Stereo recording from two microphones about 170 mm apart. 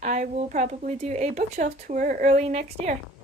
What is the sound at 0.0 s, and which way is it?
Speech, 45° right (ahead or behind).